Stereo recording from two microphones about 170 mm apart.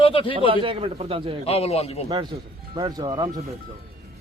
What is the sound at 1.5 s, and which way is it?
Speech, 35° left (ahead or behind).